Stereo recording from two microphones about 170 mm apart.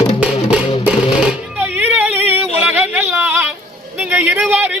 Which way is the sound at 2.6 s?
10° right (ahead or behind).